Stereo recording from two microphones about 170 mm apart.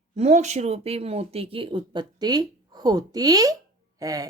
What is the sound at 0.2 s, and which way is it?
Speech, 40° right (ahead or behind).